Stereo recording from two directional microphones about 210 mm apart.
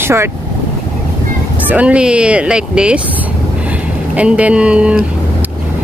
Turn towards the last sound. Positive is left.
turn(degrees=-5)  # may be behind; listen again after turning